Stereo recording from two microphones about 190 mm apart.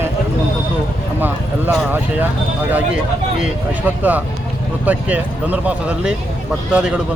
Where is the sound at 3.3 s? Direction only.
5° right (ahead or behind).